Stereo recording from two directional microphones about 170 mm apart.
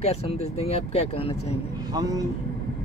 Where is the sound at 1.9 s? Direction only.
20° right (ahead or behind).